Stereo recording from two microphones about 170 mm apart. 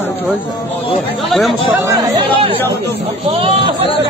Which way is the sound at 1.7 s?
20° right (ahead or behind).